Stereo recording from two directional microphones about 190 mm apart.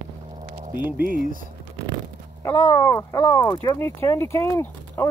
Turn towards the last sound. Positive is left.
turn(degrees=10)  # may be behind; listen again after turning